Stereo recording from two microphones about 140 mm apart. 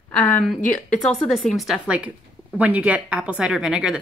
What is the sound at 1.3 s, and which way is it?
A woman's voice, centre (ahead or behind).